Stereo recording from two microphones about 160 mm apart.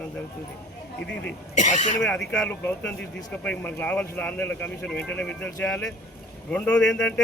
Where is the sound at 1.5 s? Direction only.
50° left (ahead or behind).